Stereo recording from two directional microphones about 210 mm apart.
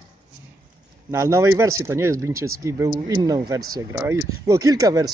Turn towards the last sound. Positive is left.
turn(degrees=-15)  # may be behind; listen again after turning